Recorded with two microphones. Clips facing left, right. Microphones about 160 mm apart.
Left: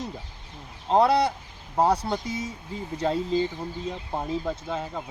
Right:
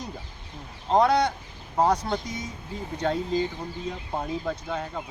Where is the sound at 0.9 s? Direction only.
5° left (ahead or behind).